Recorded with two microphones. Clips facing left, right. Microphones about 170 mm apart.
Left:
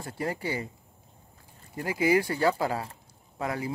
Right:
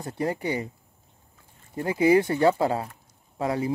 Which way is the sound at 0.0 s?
20° right (ahead or behind).